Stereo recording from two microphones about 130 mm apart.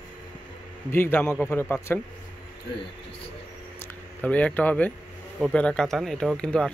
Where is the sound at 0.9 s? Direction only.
15° left (ahead or behind).